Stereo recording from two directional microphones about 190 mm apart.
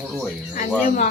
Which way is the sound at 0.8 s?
45° left (ahead or behind).